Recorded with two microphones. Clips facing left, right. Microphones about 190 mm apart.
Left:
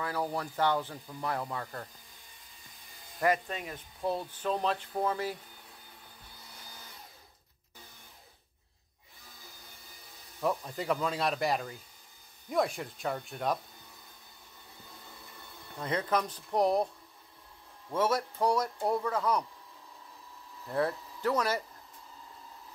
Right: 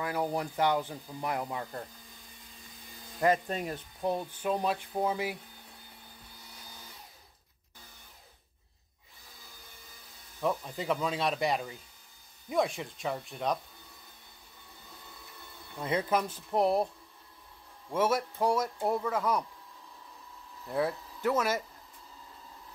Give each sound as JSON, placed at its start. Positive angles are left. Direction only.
{"t": 0.0, "sound": "speech", "side_deg": -15}
{"t": 3.4, "sound": "speech", "side_deg": -40}
{"t": 4.0, "sound": "speech", "side_deg": -15}
{"t": 10.4, "sound": "speech", "side_deg": 0}
{"t": 15.8, "sound": "speech", "side_deg": -10}
{"t": 18.0, "sound": "speech", "side_deg": -25}
{"t": 18.8, "sound": "speech", "side_deg": -5}
{"t": 21.3, "sound": "speech", "side_deg": -5}